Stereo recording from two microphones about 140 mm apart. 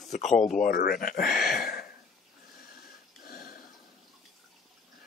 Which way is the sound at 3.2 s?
90° left.